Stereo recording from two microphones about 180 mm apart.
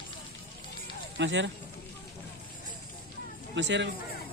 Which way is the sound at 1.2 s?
90° right.